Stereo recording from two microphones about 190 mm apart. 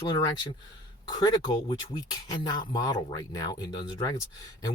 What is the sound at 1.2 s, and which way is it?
Speech, 20° left (ahead or behind).